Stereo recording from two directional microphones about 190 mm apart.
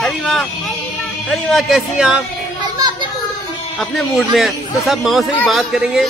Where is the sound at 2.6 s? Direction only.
20° right (ahead or behind).